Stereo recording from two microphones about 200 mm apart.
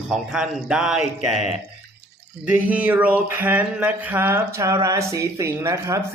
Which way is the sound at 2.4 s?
10° right (ahead or behind).